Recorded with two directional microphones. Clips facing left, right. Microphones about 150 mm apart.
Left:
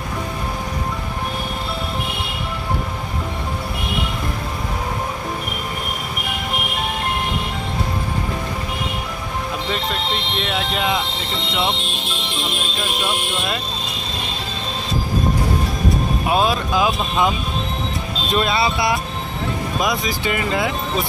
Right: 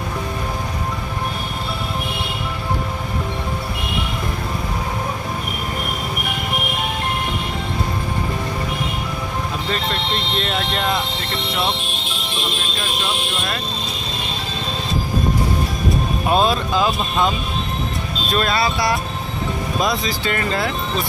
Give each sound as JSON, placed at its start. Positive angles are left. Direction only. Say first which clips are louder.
{"t": 10.4, "sound": "speech", "louder": "left 2 dB", "side_deg": 5}
{"t": 16.3, "sound": "speech", "louder": "right 2 dB", "side_deg": 10}
{"t": 18.3, "sound": "speech", "louder": "left 1 dB", "side_deg": 20}